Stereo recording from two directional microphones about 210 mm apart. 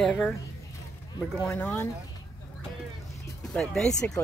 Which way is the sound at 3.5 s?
5° left (ahead or behind).